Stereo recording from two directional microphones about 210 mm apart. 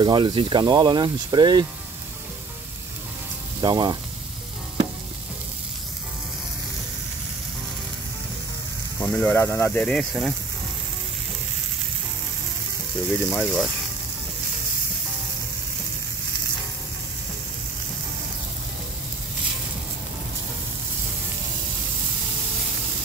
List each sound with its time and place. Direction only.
0.0 s speech: 25° right (ahead or behind)
3.6 s speech: 20° right (ahead or behind)
9.0 s speech: 10° left (ahead or behind)
13.1 s speech: 5° left (ahead or behind)